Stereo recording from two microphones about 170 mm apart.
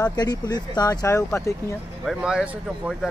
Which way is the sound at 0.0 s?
25° left (ahead or behind).